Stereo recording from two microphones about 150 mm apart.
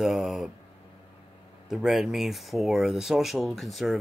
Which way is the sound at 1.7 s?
5° right (ahead or behind).